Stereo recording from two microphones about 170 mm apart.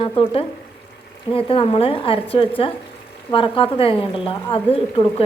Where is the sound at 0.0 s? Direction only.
30° left (ahead or behind).